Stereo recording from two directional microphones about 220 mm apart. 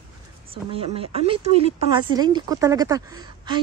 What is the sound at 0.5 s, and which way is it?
A woman's voice, 25° right (ahead or behind).